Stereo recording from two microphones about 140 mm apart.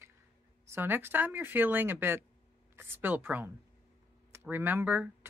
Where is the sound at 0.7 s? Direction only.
15° right (ahead or behind).